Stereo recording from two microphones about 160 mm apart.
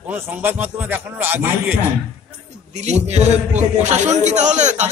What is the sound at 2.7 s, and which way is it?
A man's voice, 45° right (ahead or behind).